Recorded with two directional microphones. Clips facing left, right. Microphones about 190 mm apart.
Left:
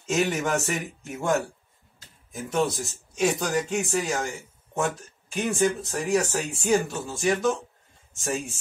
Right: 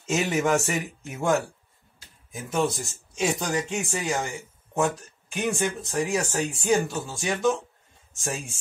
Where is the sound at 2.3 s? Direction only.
Centre (ahead or behind).